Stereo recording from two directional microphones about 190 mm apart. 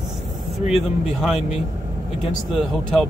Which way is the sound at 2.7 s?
Centre (ahead or behind).